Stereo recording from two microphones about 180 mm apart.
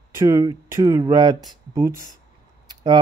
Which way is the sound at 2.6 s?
25° right (ahead or behind).